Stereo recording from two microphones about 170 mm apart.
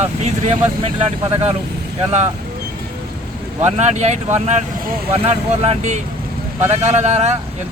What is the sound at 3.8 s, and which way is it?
Speech, 40° right (ahead or behind).